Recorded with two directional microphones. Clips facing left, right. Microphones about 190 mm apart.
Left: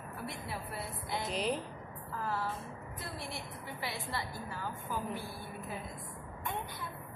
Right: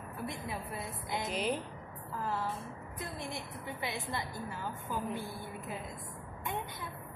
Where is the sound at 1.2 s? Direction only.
Centre (ahead or behind).